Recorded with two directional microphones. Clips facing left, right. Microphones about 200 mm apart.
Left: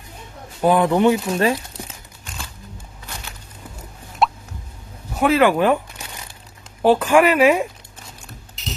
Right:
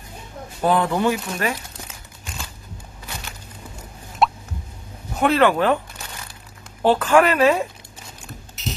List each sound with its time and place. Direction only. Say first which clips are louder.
0.6 s speech: left 4 dB; 15° left (ahead or behind)
4.2 s a sound: even; centre (ahead or behind)
5.1 s speech: left 1 dB; 5° left (ahead or behind)
6.8 s speech: left 2 dB; 10° left (ahead or behind)